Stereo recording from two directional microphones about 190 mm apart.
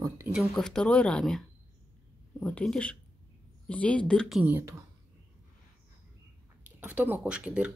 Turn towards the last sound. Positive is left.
turn(degrees=-5)  # may be behind; listen again after turning